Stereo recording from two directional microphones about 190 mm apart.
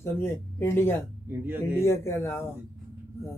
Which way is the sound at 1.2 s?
10° right (ahead or behind).